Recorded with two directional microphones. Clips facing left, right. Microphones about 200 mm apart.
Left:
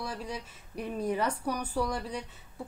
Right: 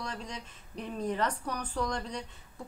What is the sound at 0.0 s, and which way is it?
A woman's voice, 5° left (ahead or behind).